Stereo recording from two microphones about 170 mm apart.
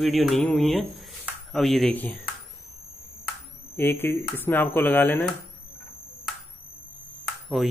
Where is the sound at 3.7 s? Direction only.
15° left (ahead or behind).